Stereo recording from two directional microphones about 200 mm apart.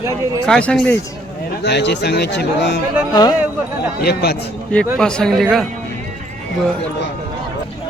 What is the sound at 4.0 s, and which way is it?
Speech, 55° left (ahead or behind).